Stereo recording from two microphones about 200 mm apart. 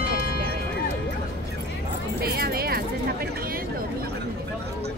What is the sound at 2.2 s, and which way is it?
Music, 50° right (ahead or behind).